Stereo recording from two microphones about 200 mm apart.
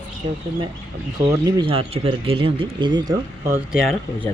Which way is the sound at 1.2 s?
20° right (ahead or behind).